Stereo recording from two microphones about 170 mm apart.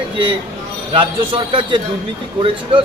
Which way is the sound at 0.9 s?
30° right (ahead or behind).